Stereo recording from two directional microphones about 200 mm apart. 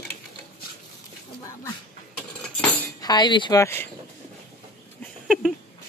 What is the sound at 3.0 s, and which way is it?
Speech, 20° left (ahead or behind).